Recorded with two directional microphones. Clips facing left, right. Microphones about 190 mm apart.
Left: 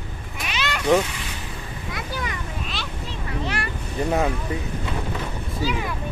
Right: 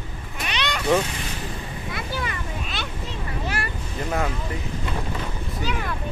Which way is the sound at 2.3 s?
Centre (ahead or behind).